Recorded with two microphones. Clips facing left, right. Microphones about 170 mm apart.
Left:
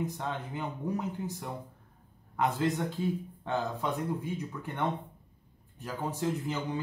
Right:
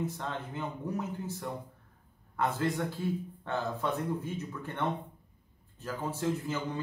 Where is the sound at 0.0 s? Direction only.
15° left (ahead or behind).